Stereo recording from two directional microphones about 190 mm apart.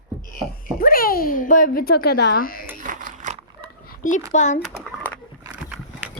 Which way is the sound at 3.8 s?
45° left (ahead or behind).